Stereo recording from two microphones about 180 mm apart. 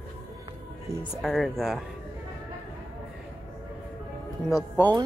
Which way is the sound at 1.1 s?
Centre (ahead or behind).